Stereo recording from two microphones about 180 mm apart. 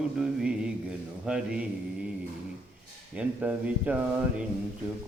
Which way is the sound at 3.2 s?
10° right (ahead or behind).